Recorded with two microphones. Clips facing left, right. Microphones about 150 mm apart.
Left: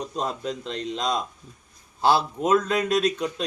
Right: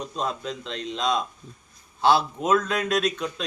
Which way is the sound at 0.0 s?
40° left (ahead or behind).